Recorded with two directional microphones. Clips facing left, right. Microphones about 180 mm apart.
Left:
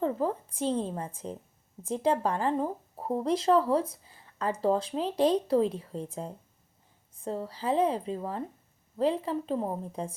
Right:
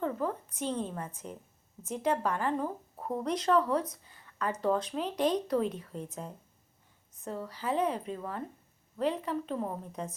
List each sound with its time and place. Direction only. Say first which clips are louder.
0.0 s a woman's voice: left 4 dB; 30° left (ahead or behind)